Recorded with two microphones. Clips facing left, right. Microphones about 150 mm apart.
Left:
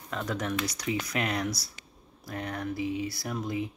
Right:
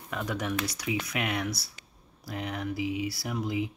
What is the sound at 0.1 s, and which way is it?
Speech, 10° right (ahead or behind).